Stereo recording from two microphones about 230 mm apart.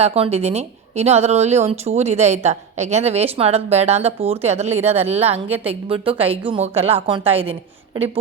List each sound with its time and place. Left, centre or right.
0.0 s speech: right